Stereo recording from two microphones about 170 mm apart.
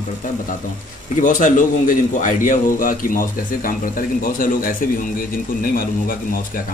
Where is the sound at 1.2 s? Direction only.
50° left (ahead or behind).